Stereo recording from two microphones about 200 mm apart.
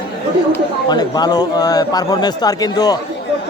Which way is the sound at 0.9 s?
20° left (ahead or behind).